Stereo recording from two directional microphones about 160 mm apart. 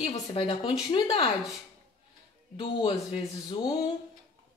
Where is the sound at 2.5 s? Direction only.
35° left (ahead or behind).